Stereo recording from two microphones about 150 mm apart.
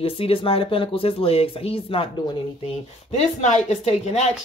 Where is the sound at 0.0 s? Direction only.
40° left (ahead or behind).